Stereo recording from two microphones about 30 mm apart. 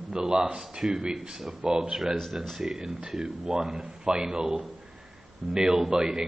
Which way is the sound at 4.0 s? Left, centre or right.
Right.